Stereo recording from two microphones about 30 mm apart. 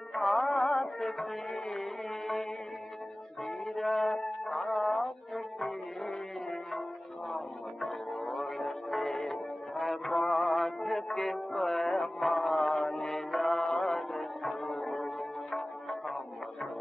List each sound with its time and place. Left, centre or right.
0.1 s music: centre
0.5 s music: left
3.4 s music: centre
12.3 s mantra: centre
12.6 s mantra: centre
13.6 s mantra: left
13.9 s music: centre